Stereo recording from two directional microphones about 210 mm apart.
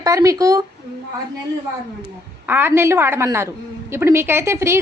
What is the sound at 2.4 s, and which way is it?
A woman's voice, 10° right (ahead or behind).